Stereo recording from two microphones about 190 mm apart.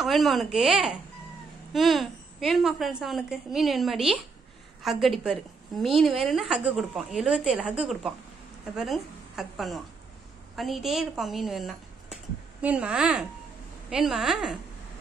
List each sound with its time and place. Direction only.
0.0 s a woman's voice: centre (ahead or behind)